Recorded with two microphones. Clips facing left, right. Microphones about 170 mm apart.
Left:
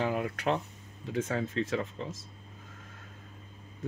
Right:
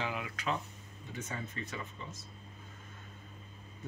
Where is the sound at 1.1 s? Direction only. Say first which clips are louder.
Left 11 dB; 80° left.